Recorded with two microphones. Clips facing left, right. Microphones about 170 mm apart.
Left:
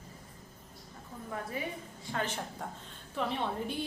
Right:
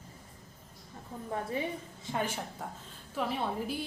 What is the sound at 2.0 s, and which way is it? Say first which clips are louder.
Speech: right 1 dB; 15° right (ahead or behind).